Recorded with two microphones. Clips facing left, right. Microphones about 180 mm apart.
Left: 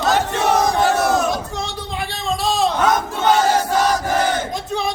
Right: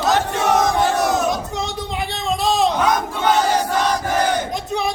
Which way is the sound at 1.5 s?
20° right (ahead or behind).